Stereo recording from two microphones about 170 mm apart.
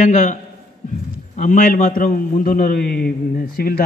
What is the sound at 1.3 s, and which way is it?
A man's voice, 50° left (ahead or behind).